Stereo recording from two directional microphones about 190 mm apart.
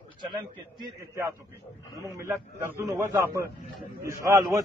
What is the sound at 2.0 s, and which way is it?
A man's voice, 15° right (ahead or behind).